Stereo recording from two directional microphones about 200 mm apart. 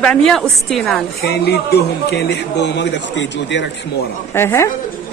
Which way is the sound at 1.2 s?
55° left (ahead or behind).